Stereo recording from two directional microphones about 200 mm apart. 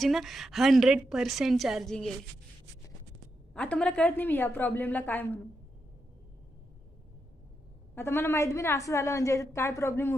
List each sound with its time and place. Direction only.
0.0 s a woman's voice: centre (ahead or behind)
3.5 s a woman's voice: 5° left (ahead or behind)
7.9 s a woman's voice: 10° left (ahead or behind)